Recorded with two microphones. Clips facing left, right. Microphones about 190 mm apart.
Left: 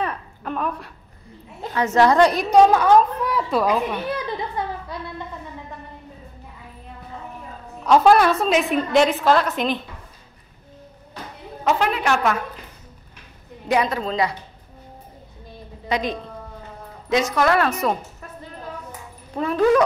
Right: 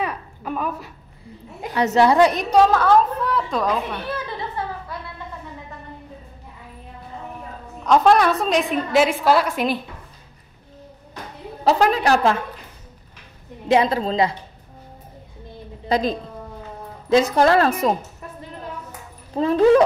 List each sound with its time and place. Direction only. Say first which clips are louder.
0.0 s a sound: even; 5° right (ahead or behind)
1.6 s a woman's voice: right 1 dB; 15° right (ahead or behind)
2.3 s a woman's voice: left 2 dB; 15° left (ahead or behind)
7.8 s a woman's voice: left 1 dB; 5° left (ahead or behind)
11.6 s a woman's voice: right 3 dB; 35° right (ahead or behind)
13.7 s a woman's voice: right 3 dB; 30° right (ahead or behind)
15.9 s a woman's voice: right 3 dB; 35° right (ahead or behind)
19.3 s a woman's voice: right 3 dB; 30° right (ahead or behind)